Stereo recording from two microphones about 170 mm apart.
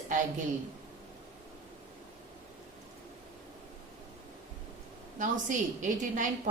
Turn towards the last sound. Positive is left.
turn(degrees=-50)  # may be behind; listen again after turning